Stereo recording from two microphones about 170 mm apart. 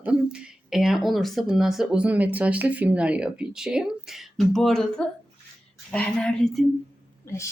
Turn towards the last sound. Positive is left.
turn(degrees=15)  # may be behind; listen again after turning